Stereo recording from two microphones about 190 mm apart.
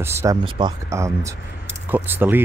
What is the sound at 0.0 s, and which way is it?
Speech, 15° right (ahead or behind).